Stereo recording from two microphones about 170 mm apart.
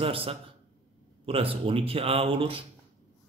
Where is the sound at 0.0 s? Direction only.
35° right (ahead or behind).